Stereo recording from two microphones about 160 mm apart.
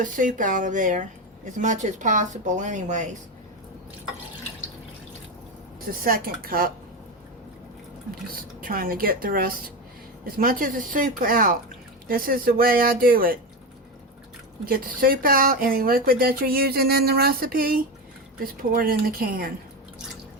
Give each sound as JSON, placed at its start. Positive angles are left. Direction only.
{"t": 0.0, "sound": "speech", "side_deg": -55}
{"t": 6.0, "sound": "speech", "side_deg": -65}
{"t": 8.3, "sound": "speech", "side_deg": -60}
{"t": 14.6, "sound": "speech", "side_deg": -65}